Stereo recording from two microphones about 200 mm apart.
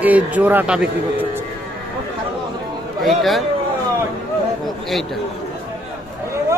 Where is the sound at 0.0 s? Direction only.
5° right (ahead or behind).